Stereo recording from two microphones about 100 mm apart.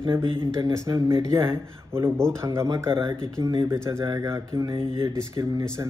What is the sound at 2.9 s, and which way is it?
Speech, 50° right (ahead or behind).